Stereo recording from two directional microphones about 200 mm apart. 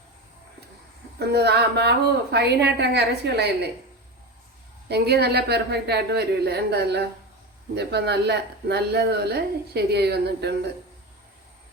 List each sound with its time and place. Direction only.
1.2 s speech: 55° right (ahead or behind)
4.9 s speech: 55° right (ahead or behind)